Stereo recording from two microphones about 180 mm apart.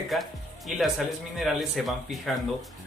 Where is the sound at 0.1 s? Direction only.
Centre (ahead or behind).